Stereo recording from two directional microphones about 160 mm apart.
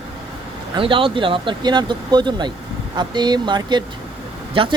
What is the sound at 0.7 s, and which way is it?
Speech, 35° right (ahead or behind).